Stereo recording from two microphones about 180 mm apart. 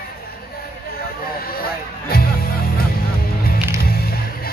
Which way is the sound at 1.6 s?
55° left (ahead or behind).